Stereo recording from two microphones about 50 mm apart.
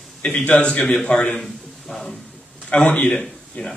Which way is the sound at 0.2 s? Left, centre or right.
Centre.